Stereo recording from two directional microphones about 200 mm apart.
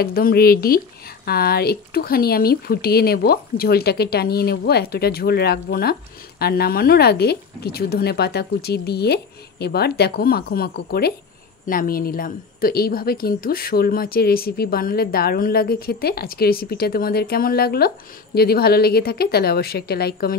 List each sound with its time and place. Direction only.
0.0 s a woman's voice: 50° left (ahead or behind)